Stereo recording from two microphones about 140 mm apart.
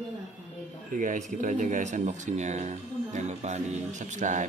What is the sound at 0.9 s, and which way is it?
Speech, 65° right (ahead or behind).